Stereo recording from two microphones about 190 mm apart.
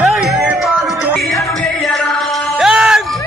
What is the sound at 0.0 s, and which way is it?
Music, 5° right (ahead or behind).